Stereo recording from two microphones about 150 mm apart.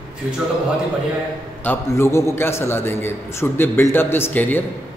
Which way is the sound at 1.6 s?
15° left (ahead or behind).